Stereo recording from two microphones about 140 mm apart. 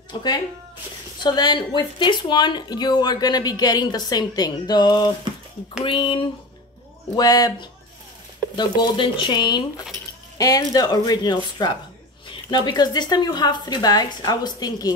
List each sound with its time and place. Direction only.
0.1 s speech: 30° left (ahead or behind)